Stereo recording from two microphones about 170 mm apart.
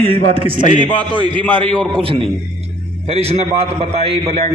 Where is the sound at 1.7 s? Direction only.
5° left (ahead or behind).